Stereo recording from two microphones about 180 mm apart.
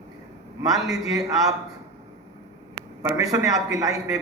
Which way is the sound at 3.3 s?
20° right (ahead or behind).